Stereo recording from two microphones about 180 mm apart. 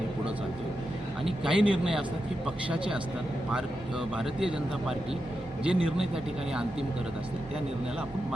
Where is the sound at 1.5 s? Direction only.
5° right (ahead or behind).